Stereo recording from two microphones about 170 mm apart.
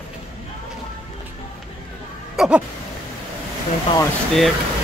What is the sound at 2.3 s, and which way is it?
Speech, 5° right (ahead or behind).